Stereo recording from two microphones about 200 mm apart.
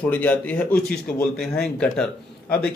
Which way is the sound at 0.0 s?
10° left (ahead or behind).